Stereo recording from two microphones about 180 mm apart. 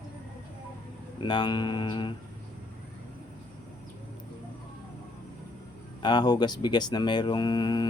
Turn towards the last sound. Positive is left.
turn(degrees=25)  # may be behind; listen again after turning